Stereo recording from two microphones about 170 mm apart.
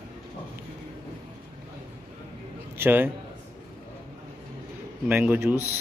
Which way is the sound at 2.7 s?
10° right (ahead or behind).